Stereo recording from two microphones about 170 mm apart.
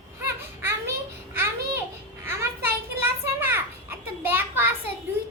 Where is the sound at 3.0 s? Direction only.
10° right (ahead or behind).